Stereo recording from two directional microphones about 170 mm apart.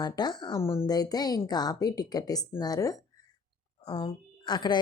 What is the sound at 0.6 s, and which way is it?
A woman's voice, 15° left (ahead or behind).